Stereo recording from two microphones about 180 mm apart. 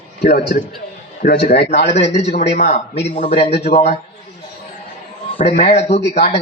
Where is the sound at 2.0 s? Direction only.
40° left (ahead or behind).